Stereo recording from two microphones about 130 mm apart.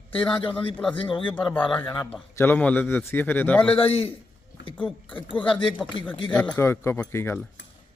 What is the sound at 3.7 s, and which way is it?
Speech, 45° left (ahead or behind).